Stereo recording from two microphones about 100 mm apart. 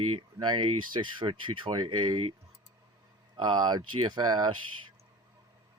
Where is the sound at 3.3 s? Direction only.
45° right (ahead or behind).